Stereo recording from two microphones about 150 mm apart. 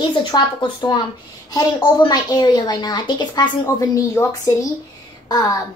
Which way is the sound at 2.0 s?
30° left (ahead or behind).